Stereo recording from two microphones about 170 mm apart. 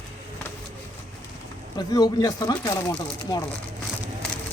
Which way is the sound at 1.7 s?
25° left (ahead or behind).